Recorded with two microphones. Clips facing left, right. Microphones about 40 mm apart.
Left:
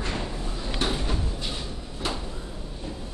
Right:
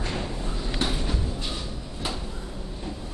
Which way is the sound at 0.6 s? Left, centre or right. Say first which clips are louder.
Left 1 dB; centre.